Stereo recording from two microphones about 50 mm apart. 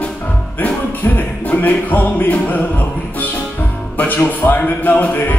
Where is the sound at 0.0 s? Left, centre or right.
Left.